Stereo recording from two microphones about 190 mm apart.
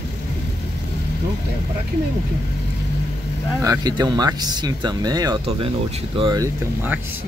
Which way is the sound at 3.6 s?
20° right (ahead or behind).